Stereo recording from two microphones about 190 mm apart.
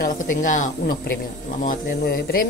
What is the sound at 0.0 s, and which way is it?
A woman's voice, 45° left (ahead or behind).